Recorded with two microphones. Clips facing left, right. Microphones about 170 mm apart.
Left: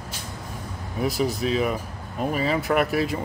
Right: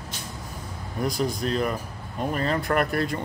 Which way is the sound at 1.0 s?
5° left (ahead or behind).